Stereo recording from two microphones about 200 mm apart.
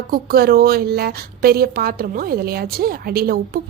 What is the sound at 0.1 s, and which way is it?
A woman's voice, 50° right (ahead or behind).